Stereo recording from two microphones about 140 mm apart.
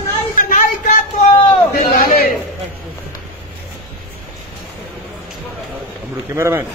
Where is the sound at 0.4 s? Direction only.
85° left.